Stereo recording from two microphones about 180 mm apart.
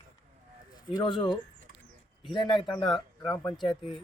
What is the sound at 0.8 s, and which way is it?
Speech, 25° left (ahead or behind).